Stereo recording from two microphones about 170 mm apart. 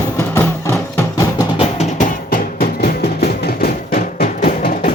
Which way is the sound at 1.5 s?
40° left (ahead or behind).